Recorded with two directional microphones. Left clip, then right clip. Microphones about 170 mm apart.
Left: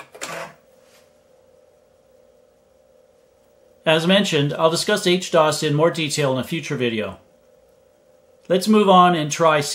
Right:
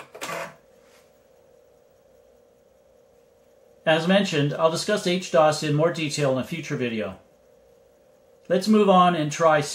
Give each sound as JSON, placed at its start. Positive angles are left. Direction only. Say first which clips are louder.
{"t": 3.8, "sound": "speech", "louder": "left 3 dB", "side_deg": 45}
{"t": 8.5, "sound": "speech", "louder": "left 4 dB", "side_deg": 45}